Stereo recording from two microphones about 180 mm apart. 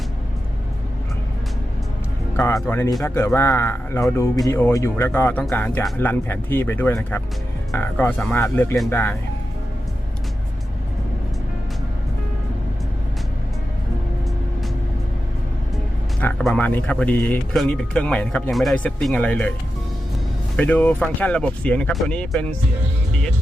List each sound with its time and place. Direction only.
2.3 s music: 15° left (ahead or behind)
2.6 s speech: 15° left (ahead or behind)
16.4 s speech: 5° left (ahead or behind)
20.6 s speech: 10° left (ahead or behind)